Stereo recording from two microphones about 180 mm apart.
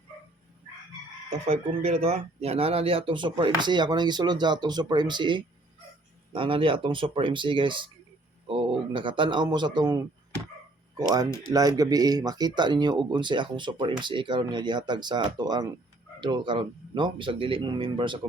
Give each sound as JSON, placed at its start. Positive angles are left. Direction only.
{"t": 1.5, "sound": "speech", "side_deg": -35}
{"t": 11.5, "sound": "speech", "side_deg": -20}